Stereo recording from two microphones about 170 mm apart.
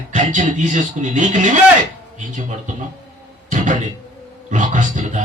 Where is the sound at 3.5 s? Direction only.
50° right (ahead or behind).